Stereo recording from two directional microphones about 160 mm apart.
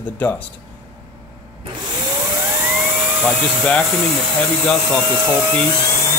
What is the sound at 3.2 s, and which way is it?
Speech, 10° left (ahead or behind).